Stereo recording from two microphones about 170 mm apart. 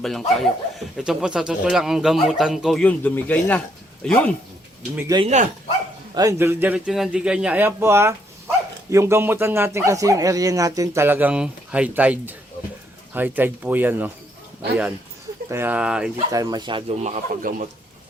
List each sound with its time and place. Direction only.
0.0 s speech: centre (ahead or behind)
4.9 s speech: 20° right (ahead or behind)
5.2 s speech: 45° right (ahead or behind)
6.1 s speech: 20° right (ahead or behind)
15.4 s speech: 15° right (ahead or behind)
16.3 s speech: 20° right (ahead or behind)
17.0 s speech: 45° right (ahead or behind)